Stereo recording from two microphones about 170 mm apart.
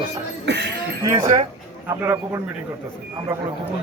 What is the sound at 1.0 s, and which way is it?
A man's voice, 20° right (ahead or behind).